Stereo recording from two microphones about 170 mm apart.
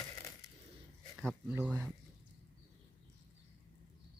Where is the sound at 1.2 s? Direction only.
5° right (ahead or behind).